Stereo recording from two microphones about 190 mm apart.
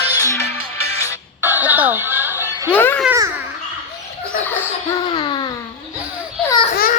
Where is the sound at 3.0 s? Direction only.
15° right (ahead or behind).